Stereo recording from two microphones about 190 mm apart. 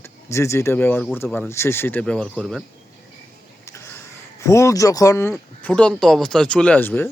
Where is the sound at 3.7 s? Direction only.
15° left (ahead or behind).